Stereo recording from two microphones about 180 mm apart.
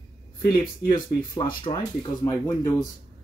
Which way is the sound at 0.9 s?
25° left (ahead or behind).